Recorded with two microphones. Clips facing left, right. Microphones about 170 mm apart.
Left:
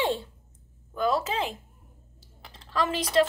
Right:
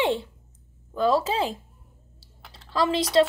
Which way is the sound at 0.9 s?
30° right (ahead or behind).